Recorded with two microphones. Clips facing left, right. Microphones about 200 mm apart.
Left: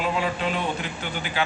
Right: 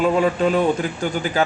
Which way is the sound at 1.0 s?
45° right (ahead or behind).